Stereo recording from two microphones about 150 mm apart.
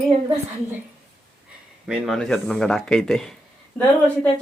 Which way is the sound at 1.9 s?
Centre (ahead or behind).